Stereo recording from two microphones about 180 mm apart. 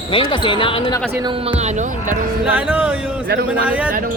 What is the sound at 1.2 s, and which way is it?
Speech, 30° right (ahead or behind).